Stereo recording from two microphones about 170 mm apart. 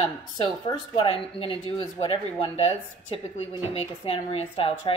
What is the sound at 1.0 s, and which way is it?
A woman's voice, 35° left (ahead or behind).